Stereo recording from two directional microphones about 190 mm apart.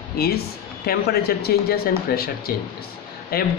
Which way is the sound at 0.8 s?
55° left (ahead or behind).